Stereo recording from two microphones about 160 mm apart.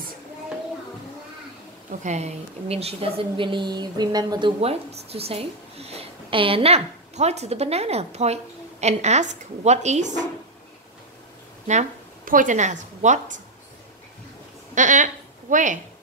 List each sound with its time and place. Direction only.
1.9 s a woman's voice: 45° right (ahead or behind)
11.7 s a woman's voice: 50° right (ahead or behind)
14.8 s a woman's voice: 50° right (ahead or behind)